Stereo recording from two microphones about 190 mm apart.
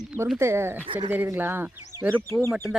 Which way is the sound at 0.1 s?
10° right (ahead or behind).